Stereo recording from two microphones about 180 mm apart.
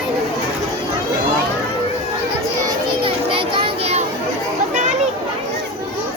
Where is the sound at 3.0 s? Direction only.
30° right (ahead or behind).